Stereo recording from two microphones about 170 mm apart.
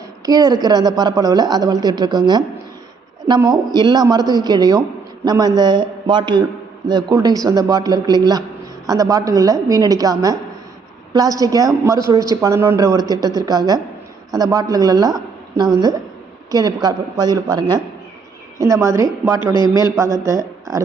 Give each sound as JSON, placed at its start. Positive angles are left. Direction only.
{"t": 0.3, "sound": "a woman's voice", "side_deg": -20}
{"t": 19.5, "sound": "a man's voice", "side_deg": 25}
{"t": 19.8, "sound": "a woman's voice", "side_deg": -15}